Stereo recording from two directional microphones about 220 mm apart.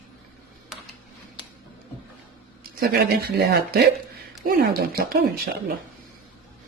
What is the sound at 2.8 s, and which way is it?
Speech, 45° right (ahead or behind).